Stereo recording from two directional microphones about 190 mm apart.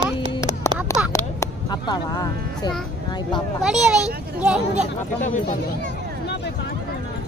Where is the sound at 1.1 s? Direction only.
20° left (ahead or behind).